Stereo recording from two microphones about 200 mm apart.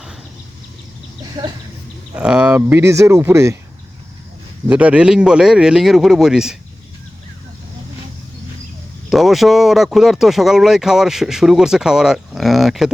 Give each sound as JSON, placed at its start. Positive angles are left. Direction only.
{"t": 1.2, "sound": "speech", "side_deg": -20}
{"t": 2.1, "sound": "speech", "side_deg": -5}
{"t": 4.7, "sound": "speech", "side_deg": -5}
{"t": 9.0, "sound": "speech", "side_deg": 0}